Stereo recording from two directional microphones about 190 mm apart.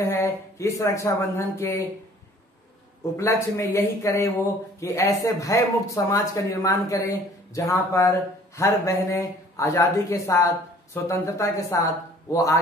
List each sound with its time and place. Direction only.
0.0 s a man's voice: 15° left (ahead or behind)
3.2 s a man's voice: 15° left (ahead or behind)